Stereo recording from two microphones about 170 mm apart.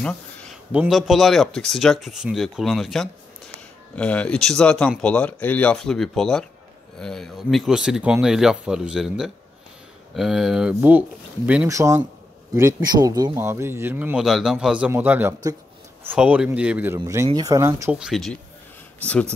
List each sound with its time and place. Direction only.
0.7 s speech: 5° right (ahead or behind)
18.0 s speech: centre (ahead or behind)